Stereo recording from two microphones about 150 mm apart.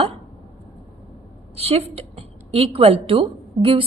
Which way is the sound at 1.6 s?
45° right (ahead or behind).